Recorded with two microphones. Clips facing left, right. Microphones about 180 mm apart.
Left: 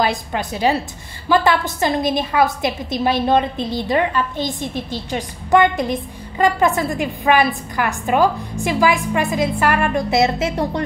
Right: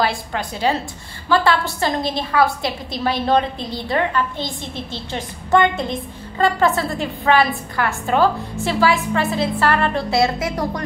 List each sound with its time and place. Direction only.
0.0 s a woman's voice: 20° left (ahead or behind)